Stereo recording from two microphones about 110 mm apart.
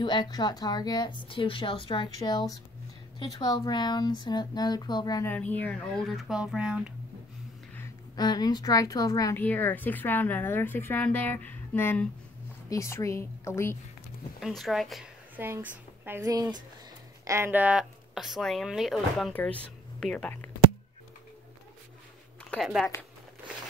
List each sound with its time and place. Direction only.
0.0 s a woman's voice: 45° left (ahead or behind)
2.1 s a woman's voice: 35° left (ahead or behind)
5.2 s speech: 15° left (ahead or behind); by 6.9 s 5° right (ahead or behind)
8.2 s a woman's voice: 40° left (ahead or behind)
9.4 s a woman's voice: 15° left (ahead or behind)
14.4 s speech: centre (ahead or behind)
15.3 s a woman's voice: 20° right (ahead or behind)
17.2 s a sound: 25° right (ahead or behind)
17.5 s speech: 15° right (ahead or behind)
19.3 s speech: 10° left (ahead or behind)
22.6 s speech: centre (ahead or behind)